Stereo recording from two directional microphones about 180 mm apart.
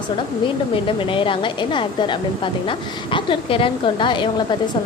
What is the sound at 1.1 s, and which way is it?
A woman's voice, 30° left (ahead or behind).